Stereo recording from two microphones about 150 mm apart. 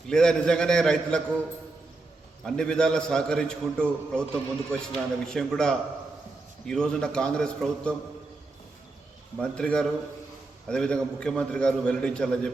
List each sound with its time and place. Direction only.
0.1 s a man's voice: 5° left (ahead or behind)
2.4 s a man's voice: 5° left (ahead or behind)
9.4 s a man's voice: 5° left (ahead or behind)